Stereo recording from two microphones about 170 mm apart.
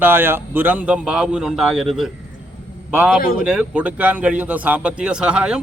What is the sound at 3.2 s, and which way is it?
Speech, 60° left (ahead or behind).